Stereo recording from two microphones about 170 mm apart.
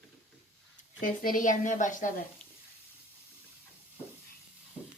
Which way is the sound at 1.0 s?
55° left (ahead or behind).